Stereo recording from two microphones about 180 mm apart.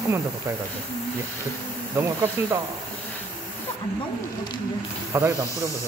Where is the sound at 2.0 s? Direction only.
15° right (ahead or behind).